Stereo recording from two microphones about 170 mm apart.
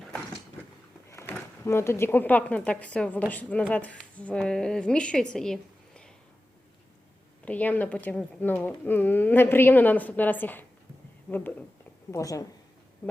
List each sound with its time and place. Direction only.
1.1 s a woman's voice: 15° left (ahead or behind)
7.4 s a woman's voice: 10° left (ahead or behind)